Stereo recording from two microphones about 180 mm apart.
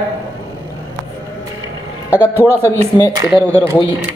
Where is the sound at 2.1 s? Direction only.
10° right (ahead or behind).